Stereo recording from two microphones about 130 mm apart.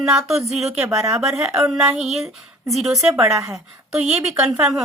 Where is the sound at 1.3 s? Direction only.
5° right (ahead or behind).